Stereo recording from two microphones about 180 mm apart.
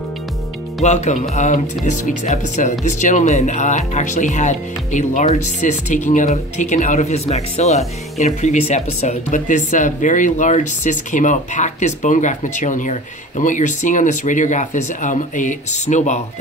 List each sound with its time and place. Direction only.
0.8 s speech: 40° left (ahead or behind)